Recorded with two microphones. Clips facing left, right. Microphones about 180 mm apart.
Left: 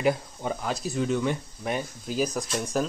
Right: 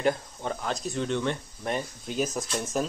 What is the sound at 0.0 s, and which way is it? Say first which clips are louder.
Speech: left 1 dB; 5° left (ahead or behind).